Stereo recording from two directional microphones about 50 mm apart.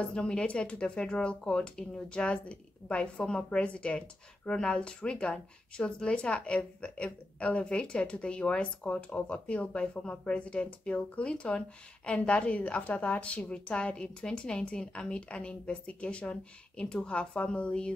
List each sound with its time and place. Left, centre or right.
0.0 s a woman's voice: centre